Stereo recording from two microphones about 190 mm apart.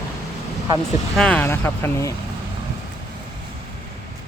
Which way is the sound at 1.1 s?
5° left (ahead or behind).